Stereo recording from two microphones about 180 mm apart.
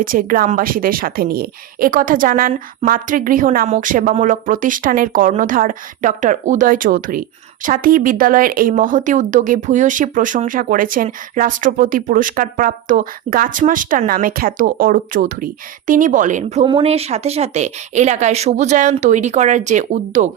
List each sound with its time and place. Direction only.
0.0 s speech: 50° right (ahead or behind)
16.6 s a woman's voice: 30° right (ahead or behind)